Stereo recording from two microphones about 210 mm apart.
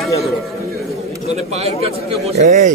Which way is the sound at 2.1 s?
30° right (ahead or behind).